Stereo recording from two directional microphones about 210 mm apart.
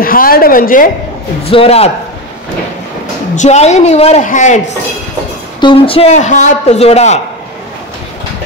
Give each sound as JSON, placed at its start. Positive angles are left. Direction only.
{"t": 0.0, "sound": "a woman's voice", "side_deg": 45}
{"t": 1.4, "sound": "a man's voice", "side_deg": 25}
{"t": 3.3, "sound": "a man's voice", "side_deg": 30}
{"t": 5.6, "sound": "a man's voice", "side_deg": 25}